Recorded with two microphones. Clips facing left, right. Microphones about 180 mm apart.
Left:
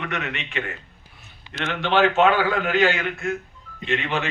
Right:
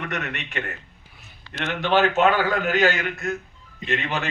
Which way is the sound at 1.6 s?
45° right (ahead or behind).